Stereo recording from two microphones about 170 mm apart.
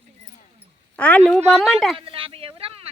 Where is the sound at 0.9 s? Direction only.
10° left (ahead or behind).